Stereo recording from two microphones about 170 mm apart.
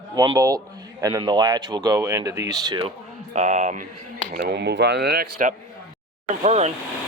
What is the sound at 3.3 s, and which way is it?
Speech, 45° right (ahead or behind).